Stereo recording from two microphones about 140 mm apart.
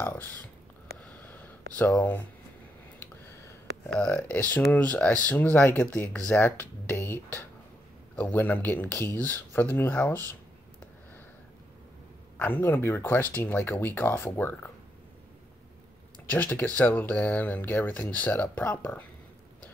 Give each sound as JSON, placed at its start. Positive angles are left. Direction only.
{"t": 0.0, "sound": "speech", "side_deg": 15}
{"t": 1.0, "sound": "a sound", "side_deg": 10}
{"t": 3.9, "sound": "speech", "side_deg": 5}
{"t": 8.2, "sound": "speech", "side_deg": 15}
{"t": 12.4, "sound": "speech", "side_deg": 15}
{"t": 16.3, "sound": "speech", "side_deg": 15}